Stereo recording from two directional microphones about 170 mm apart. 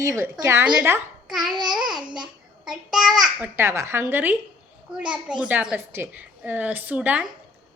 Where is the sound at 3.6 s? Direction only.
15° right (ahead or behind).